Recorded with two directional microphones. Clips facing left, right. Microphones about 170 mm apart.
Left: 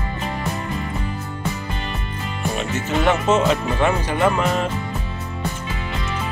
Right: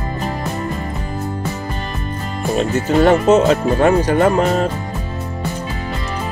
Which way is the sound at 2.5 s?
40° right (ahead or behind).